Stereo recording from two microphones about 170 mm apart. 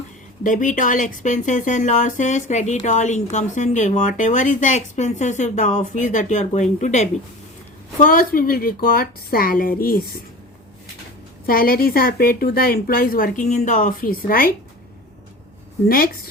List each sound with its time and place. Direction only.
0.4 s speech: 50° left (ahead or behind)
8.0 s a woman's voice: 55° left (ahead or behind)
11.4 s a woman's voice: 60° left (ahead or behind)
15.9 s a woman's voice: 60° left (ahead or behind)